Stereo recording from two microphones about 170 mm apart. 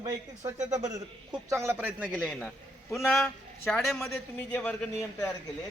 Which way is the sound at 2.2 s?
5° left (ahead or behind).